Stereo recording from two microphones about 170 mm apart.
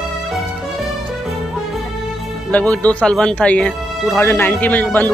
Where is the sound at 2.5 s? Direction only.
10° left (ahead or behind).